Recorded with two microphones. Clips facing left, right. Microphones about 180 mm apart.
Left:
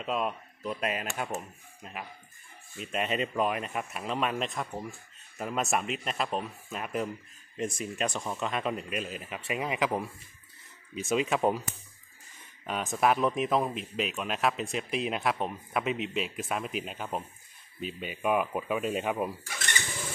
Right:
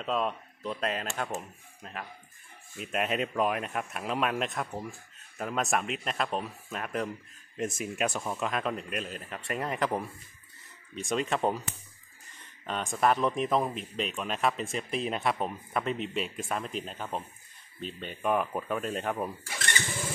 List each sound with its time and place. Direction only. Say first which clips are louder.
0.0 s speech: right 1 dB; 5° left (ahead or behind)
2.8 s speech: even; centre (ahead or behind)
12.6 s speech: even; 5° left (ahead or behind)